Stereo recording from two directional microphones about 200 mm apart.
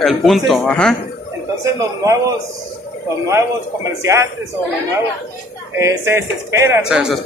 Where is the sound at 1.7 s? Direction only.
15° right (ahead or behind).